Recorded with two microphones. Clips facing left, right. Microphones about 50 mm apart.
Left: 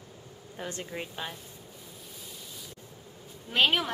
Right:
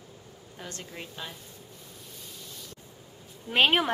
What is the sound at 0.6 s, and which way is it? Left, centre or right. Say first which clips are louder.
Speech: left 4 dB; centre.